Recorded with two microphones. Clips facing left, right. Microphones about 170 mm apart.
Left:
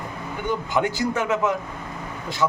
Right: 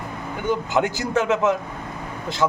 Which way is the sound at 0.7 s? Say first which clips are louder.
Even; 25° right (ahead or behind).